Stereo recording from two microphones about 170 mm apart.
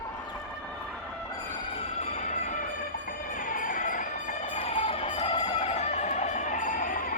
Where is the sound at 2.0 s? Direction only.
45° left (ahead or behind).